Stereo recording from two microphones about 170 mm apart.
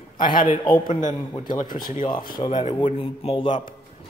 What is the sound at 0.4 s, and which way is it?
Speech, 25° left (ahead or behind).